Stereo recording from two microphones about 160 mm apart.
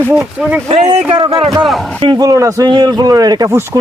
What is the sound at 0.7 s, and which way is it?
Speech, 45° right (ahead or behind).